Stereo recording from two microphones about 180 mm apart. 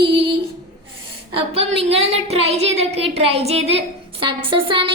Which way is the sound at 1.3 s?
30° right (ahead or behind).